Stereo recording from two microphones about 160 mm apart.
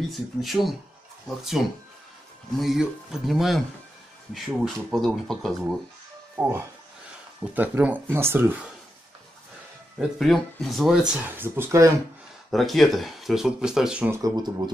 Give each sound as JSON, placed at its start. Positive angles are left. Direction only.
{"t": 0.1, "sound": "speech", "side_deg": 0}
{"t": 6.3, "sound": "speech", "side_deg": -10}
{"t": 9.9, "sound": "speech", "side_deg": 0}
{"t": 12.4, "sound": "speech", "side_deg": 0}
{"t": 14.2, "sound": "speech", "side_deg": -25}